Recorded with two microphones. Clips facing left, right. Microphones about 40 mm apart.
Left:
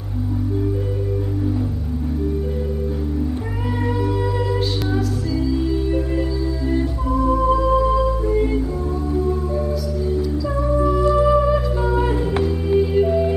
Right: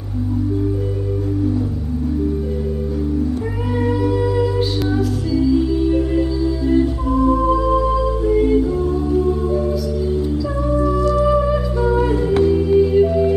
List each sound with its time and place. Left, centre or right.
3.8 s music: centre
7.1 s music: right
11.0 s music: left
11.2 s music: centre